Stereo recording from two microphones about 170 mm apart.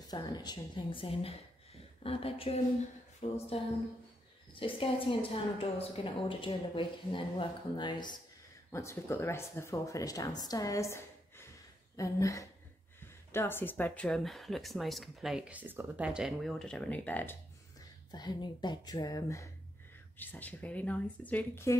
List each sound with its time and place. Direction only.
0.1 s a woman's voice: 25° left (ahead or behind)
4.6 s a woman's voice: 30° left (ahead or behind)
8.7 s a woman's voice: 15° left (ahead or behind)
17.7 s speech: 25° left (ahead or behind)